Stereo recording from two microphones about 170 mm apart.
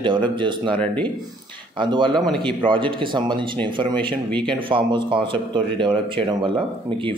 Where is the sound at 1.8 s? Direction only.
30° right (ahead or behind).